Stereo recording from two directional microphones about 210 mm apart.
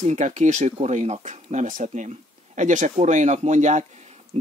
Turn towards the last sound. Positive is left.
turn(degrees=-30)  # may be behind; listen again after turning